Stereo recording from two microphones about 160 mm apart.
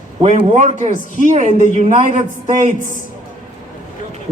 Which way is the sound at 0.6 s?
55° right (ahead or behind).